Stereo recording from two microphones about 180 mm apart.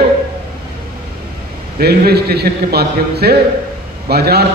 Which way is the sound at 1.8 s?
60° right (ahead or behind).